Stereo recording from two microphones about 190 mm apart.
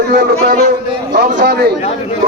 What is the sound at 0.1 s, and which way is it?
A man's voice, 55° right (ahead or behind).